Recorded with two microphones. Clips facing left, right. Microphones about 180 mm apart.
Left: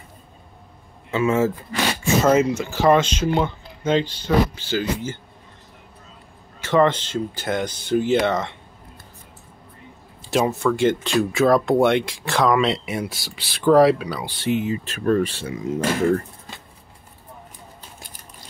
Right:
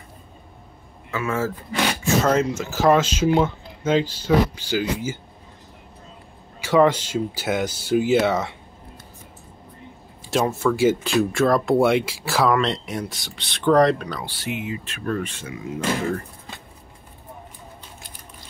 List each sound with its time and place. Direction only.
1.1 s speech: 20° left (ahead or behind)
2.0 s speech: centre (ahead or behind)
6.6 s speech: 10° right (ahead or behind)
10.3 s speech: centre (ahead or behind)
12.5 s speech: 5° left (ahead or behind)
14.4 s speech: 35° left (ahead or behind)